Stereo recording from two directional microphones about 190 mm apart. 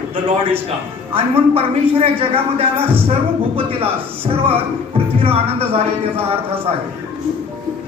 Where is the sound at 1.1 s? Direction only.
30° right (ahead or behind).